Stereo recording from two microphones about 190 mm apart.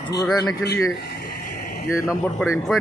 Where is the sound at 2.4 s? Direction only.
5° left (ahead or behind).